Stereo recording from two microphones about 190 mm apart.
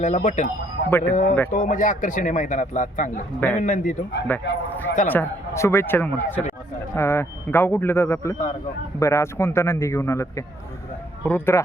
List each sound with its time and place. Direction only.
0.0 s a man's voice: 40° left (ahead or behind)
0.9 s speech: 10° left (ahead or behind)
1.1 s a man's voice: 40° left (ahead or behind)
4.3 s speech: 10° left (ahead or behind)